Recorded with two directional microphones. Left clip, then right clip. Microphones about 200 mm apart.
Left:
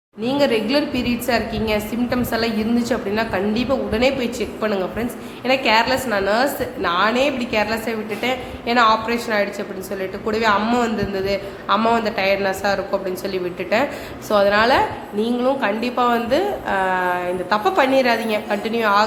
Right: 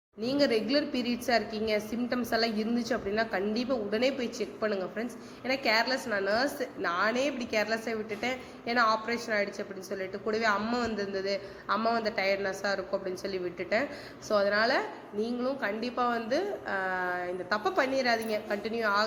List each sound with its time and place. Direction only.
0.3 s a woman's voice: 15° right (ahead or behind)